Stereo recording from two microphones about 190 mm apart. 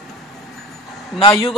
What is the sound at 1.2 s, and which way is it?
Speech, 15° left (ahead or behind).